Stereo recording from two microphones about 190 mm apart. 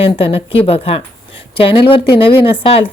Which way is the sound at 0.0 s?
30° left (ahead or behind).